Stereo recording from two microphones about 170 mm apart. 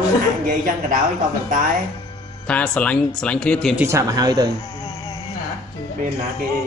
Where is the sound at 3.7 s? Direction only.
15° right (ahead or behind).